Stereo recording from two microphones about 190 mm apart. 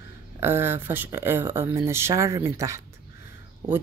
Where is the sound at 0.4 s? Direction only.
10° right (ahead or behind).